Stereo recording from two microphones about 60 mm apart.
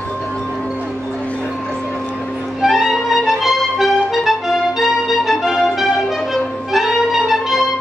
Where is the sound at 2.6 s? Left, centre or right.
Centre.